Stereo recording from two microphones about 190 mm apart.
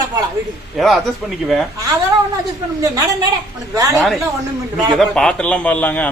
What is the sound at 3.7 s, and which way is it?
Speech, 15° right (ahead or behind).